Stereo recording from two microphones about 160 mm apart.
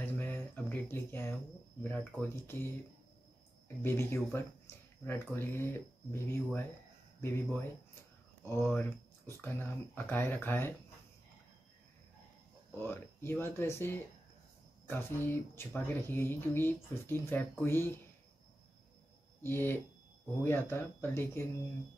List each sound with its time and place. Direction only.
0.0 s a sound: 10° left (ahead or behind)
1.8 s speech: 15° left (ahead or behind)
8.5 s speech: 15° left (ahead or behind)
12.8 s speech: 15° left (ahead or behind)
19.4 s speech: 15° left (ahead or behind)